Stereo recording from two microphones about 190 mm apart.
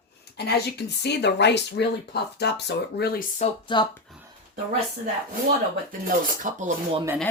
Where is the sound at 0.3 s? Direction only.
60° left (ahead or behind); by 3.5 s 45° left (ahead or behind).